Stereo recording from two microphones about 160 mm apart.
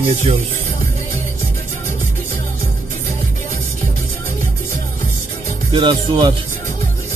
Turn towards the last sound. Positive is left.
turn(degrees=-30)  # may be behind; listen again after turning